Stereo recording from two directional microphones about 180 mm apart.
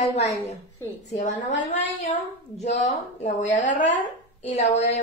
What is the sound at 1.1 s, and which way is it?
Speech, 40° left (ahead or behind).